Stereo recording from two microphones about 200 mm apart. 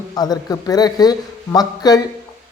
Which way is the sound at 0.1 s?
20° left (ahead or behind).